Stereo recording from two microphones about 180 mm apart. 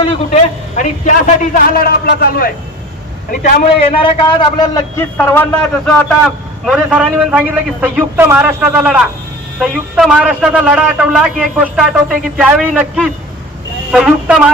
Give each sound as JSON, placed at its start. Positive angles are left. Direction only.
{"t": 0.1, "sound": "a man's voice", "side_deg": 45}
{"t": 2.0, "sound": "a man's voice", "side_deg": 60}
{"t": 4.0, "sound": "a man's voice", "side_deg": 25}
{"t": 5.1, "sound": "a man's voice", "side_deg": 10}